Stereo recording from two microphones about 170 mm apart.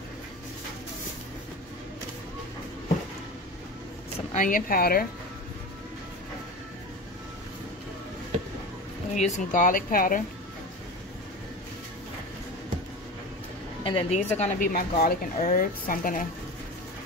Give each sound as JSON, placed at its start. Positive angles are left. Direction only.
{"t": 4.3, "sound": "speech", "side_deg": 50}
{"t": 9.1, "sound": "speech", "side_deg": 45}
{"t": 13.8, "sound": "a woman's voice", "side_deg": 35}
{"t": 14.7, "sound": "speech", "side_deg": 60}